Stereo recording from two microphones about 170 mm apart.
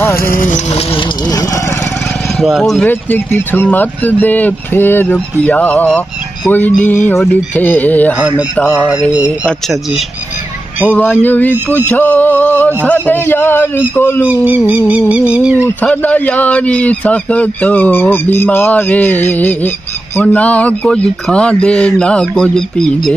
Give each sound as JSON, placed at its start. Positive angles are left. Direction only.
{"t": 0.1, "sound": "speech", "side_deg": 55}
{"t": 0.9, "sound": "speech", "side_deg": 20}
{"t": 2.4, "sound": "speech", "side_deg": 0}
{"t": 2.9, "sound": "a man's voice", "side_deg": 10}
{"t": 8.7, "sound": "speech", "side_deg": -5}
{"t": 10.9, "sound": "a man's voice", "side_deg": 10}
{"t": 14.2, "sound": "speech", "side_deg": -10}
{"t": 15.6, "sound": "a man's voice", "side_deg": 10}